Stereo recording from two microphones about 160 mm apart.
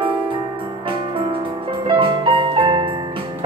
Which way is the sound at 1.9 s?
35° right (ahead or behind).